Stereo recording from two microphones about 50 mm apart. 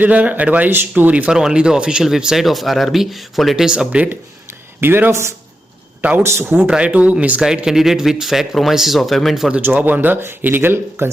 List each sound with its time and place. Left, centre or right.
0.0 s speech: right
1.3 s speech: centre
4.8 s speech: right
6.0 s speech: right
6.7 s speech: right
7.4 s speech: centre
9.6 s speech: right
11.0 s speech: right